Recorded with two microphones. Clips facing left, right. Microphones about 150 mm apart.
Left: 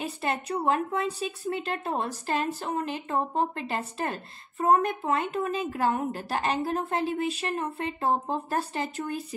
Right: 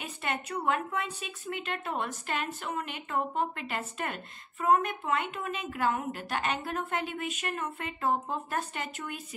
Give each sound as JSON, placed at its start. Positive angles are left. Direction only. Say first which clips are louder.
{"t": 0.0, "sound": "a woman's voice", "louder": "left 5 dB", "side_deg": 35}